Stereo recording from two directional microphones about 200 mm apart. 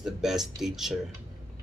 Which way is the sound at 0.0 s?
Centre (ahead or behind).